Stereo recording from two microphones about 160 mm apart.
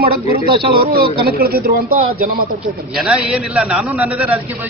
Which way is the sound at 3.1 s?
5° right (ahead or behind).